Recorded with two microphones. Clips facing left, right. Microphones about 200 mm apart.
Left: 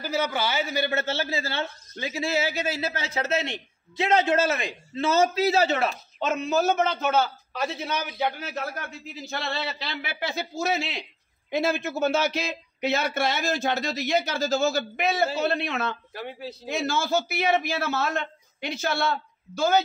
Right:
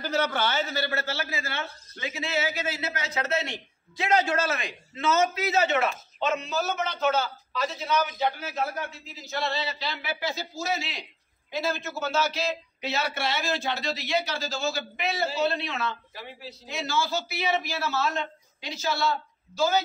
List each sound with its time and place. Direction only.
0.0 s a man's voice: 10° left (ahead or behind); by 19.8 s 55° left (ahead or behind)